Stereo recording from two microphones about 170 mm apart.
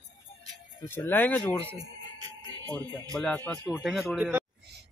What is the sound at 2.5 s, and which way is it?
Speech, 25° right (ahead or behind).